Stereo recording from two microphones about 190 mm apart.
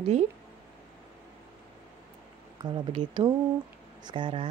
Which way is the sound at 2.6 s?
25° right (ahead or behind).